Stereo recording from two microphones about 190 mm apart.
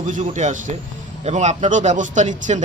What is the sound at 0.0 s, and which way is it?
Speech, 40° right (ahead or behind).